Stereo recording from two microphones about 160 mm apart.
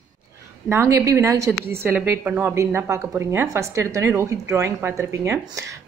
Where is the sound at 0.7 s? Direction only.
15° right (ahead or behind).